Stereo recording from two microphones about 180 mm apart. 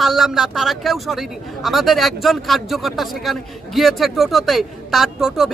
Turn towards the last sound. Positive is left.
turn(degrees=0)  # may be behind; listen again after turning